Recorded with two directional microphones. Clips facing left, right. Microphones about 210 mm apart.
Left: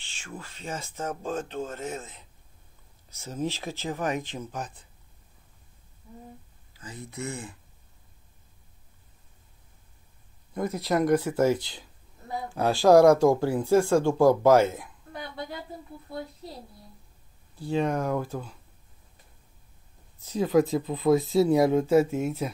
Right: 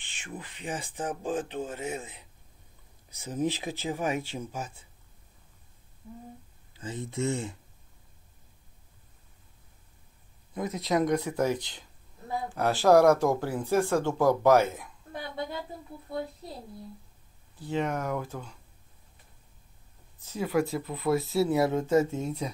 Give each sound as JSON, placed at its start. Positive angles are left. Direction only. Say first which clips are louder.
{"t": 0.2, "sound": "speech", "louder": "even", "side_deg": -20}
{"t": 6.7, "sound": "speech", "louder": "right 5 dB", "side_deg": -25}
{"t": 10.5, "sound": "speech", "louder": "left 2 dB", "side_deg": 0}
{"t": 17.6, "sound": "speech", "louder": "left 4 dB", "side_deg": 10}
{"t": 20.2, "sound": "speech", "louder": "left 5 dB", "side_deg": 15}